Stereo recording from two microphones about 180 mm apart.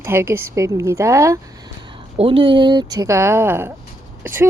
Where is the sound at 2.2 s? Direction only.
30° right (ahead or behind).